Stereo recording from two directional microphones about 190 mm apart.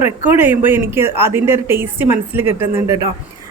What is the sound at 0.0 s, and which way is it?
A woman's voice, 10° right (ahead or behind).